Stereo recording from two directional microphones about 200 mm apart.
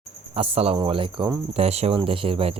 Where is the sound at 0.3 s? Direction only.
30° right (ahead or behind).